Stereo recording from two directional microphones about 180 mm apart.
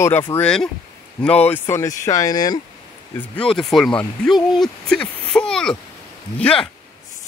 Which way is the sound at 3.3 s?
5° left (ahead or behind).